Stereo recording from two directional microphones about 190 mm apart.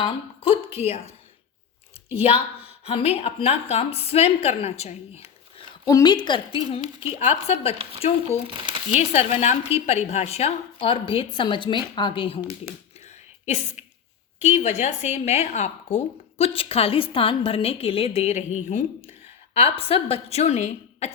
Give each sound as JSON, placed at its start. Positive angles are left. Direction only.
{"t": 0.0, "sound": "speech", "side_deg": 30}
{"t": 2.1, "sound": "a woman's voice", "side_deg": 30}
{"t": 5.9, "sound": "a woman's voice", "side_deg": 20}
{"t": 8.4, "sound": "speech", "side_deg": -25}
{"t": 9.0, "sound": "a woman's voice", "side_deg": 35}
{"t": 13.4, "sound": "a woman's voice", "side_deg": 35}